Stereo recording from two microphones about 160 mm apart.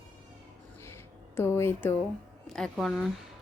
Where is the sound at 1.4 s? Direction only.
15° left (ahead or behind).